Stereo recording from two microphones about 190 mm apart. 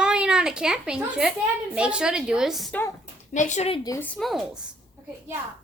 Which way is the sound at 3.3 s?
40° left (ahead or behind).